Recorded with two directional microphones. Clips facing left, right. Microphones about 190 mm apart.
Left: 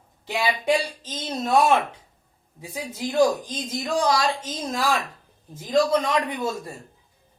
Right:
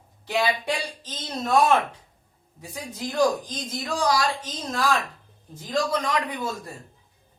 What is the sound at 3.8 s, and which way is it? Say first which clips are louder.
Speech: left 2 dB; 25° left (ahead or behind).